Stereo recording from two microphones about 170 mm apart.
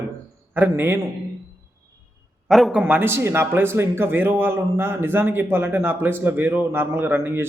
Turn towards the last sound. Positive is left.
turn(degrees=-10)  # may be behind; listen again after turning